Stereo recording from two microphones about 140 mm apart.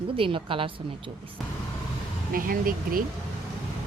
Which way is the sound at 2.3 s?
90° right.